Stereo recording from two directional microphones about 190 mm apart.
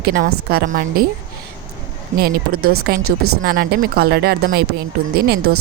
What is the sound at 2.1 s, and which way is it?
A woman's voice, 55° right (ahead or behind).